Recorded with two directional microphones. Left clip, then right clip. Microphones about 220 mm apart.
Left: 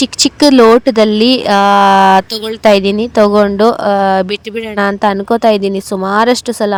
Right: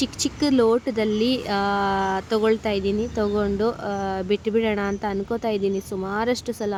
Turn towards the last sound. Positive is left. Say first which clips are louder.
# left 13 dB
turn(degrees=40)  # may be behind; listen again after turning